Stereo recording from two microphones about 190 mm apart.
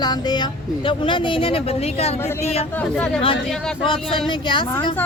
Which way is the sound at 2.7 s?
10° left (ahead or behind).